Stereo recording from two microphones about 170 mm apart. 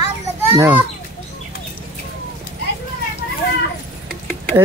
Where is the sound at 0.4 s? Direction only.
10° right (ahead or behind).